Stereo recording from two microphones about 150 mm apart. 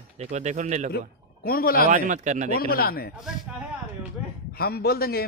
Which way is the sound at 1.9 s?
60° right (ahead or behind).